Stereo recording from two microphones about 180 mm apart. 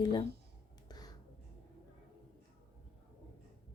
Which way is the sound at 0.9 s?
20° left (ahead or behind).